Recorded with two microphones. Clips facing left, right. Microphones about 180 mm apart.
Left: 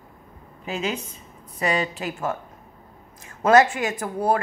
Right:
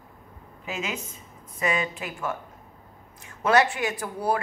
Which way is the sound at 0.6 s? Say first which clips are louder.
Left 5 dB; 35° left (ahead or behind).